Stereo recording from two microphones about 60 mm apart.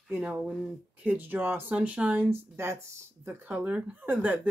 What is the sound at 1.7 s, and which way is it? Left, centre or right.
Speech, right.